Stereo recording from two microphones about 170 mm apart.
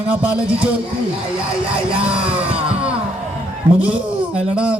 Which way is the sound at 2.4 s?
5° right (ahead or behind).